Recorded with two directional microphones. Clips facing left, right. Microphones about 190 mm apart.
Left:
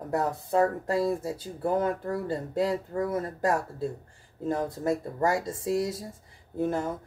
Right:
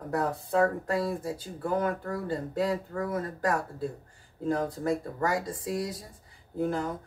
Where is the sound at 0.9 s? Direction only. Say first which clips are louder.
Left 3 dB; 25° left (ahead or behind).